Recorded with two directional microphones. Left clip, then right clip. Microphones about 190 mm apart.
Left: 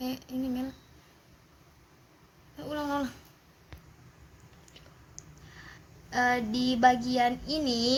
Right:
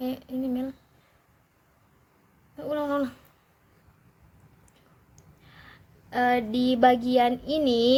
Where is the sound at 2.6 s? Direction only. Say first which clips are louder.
Right 5 dB; 45° right (ahead or behind).